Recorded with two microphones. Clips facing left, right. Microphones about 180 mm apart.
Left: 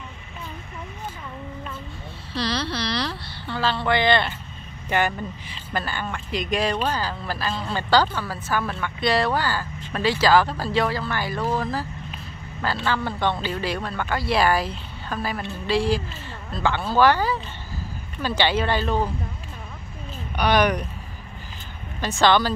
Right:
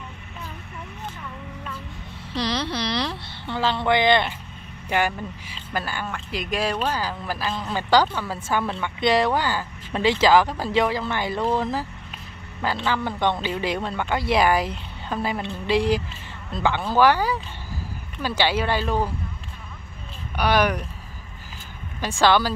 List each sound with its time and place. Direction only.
2.3 s speech: 20° right (ahead or behind)
20.3 s speech: 5° right (ahead or behind)
22.0 s speech: 10° right (ahead or behind)